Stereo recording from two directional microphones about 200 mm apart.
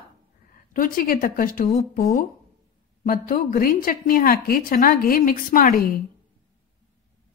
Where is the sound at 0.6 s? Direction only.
45° left (ahead or behind).